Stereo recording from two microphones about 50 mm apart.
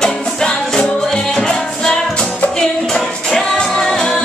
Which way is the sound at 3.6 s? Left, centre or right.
Centre.